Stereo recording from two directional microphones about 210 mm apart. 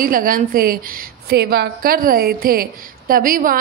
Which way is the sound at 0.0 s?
40° right (ahead or behind).